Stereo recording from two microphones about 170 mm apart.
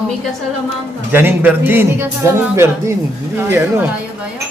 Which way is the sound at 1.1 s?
10° right (ahead or behind).